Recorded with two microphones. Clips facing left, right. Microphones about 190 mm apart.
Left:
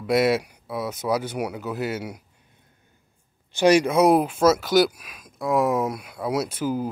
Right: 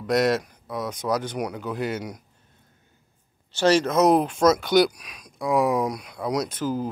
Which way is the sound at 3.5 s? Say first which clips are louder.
Left 2 dB; 15° left (ahead or behind).